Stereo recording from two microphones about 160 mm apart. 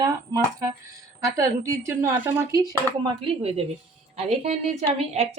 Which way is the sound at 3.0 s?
35° right (ahead or behind).